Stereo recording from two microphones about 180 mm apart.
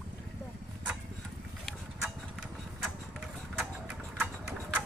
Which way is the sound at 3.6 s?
5° right (ahead or behind).